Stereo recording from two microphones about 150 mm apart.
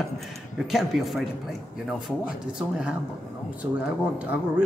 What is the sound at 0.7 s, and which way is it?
Speech, centre (ahead or behind).